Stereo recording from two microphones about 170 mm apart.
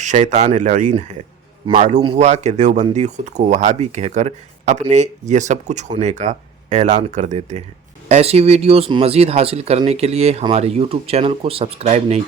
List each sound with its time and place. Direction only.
0.0 s speech: 45° right (ahead or behind)